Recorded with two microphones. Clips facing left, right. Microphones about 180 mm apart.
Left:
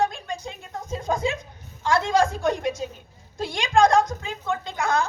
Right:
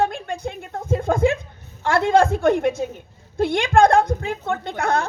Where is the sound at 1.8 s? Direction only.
55° right (ahead or behind).